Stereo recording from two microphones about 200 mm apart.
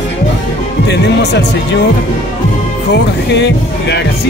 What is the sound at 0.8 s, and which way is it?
Speech, 60° left (ahead or behind).